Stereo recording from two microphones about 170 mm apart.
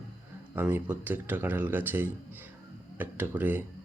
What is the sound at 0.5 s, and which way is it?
Speech, 10° right (ahead or behind).